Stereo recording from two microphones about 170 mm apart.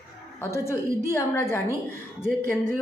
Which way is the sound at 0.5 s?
15° left (ahead or behind).